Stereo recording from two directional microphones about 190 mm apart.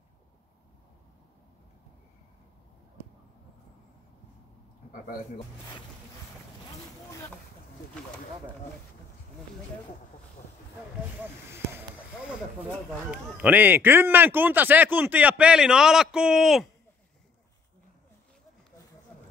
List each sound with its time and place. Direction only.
4.9 s speech: 45° left (ahead or behind)
13.1 s a man's voice: 5° right (ahead or behind)